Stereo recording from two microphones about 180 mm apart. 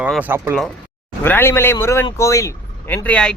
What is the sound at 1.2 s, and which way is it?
Speech, 10° left (ahead or behind).